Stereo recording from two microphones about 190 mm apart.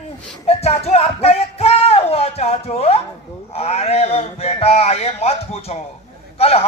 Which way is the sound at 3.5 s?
35° left (ahead or behind).